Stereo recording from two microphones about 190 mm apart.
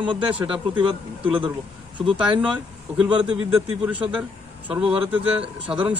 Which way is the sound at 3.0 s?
5° right (ahead or behind).